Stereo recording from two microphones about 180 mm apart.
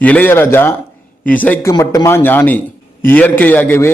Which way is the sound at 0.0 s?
10° left (ahead or behind).